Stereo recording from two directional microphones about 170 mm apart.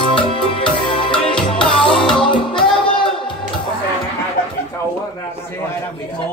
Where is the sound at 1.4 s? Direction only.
5° left (ahead or behind).